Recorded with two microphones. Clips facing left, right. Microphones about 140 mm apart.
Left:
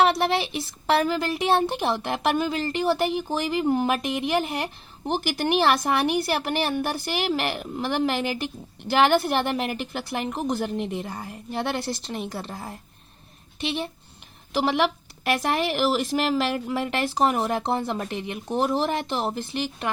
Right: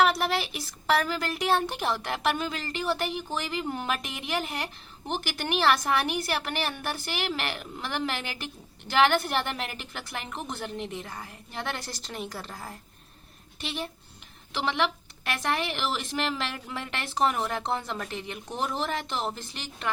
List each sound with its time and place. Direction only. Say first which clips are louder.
0.2 s a woman's voice: left 5 dB; 30° left (ahead or behind)
14.5 s speech: left 5 dB; 35° left (ahead or behind)